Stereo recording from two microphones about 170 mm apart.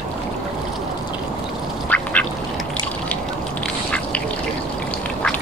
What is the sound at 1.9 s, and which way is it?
Duck, 10° left (ahead or behind).